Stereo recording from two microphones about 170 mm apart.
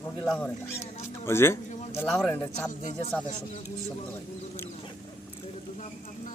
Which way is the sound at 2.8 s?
40° left (ahead or behind).